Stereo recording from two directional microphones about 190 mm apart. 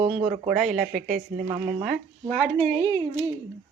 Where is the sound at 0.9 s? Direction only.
40° right (ahead or behind).